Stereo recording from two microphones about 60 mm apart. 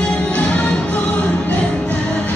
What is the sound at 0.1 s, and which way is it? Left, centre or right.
Music, left.